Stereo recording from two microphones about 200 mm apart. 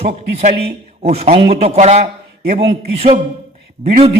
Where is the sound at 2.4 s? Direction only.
50° right (ahead or behind).